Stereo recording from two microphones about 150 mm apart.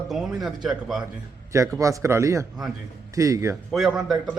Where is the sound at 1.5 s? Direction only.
20° right (ahead or behind).